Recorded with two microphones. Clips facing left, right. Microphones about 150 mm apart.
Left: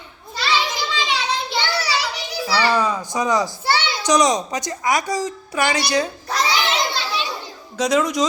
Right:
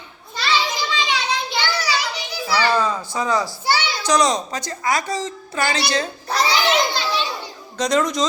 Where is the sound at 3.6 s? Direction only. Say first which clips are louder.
Even; centre (ahead or behind).